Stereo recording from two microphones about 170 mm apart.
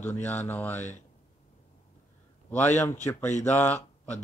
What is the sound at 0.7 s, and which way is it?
Speech, 45° left (ahead or behind).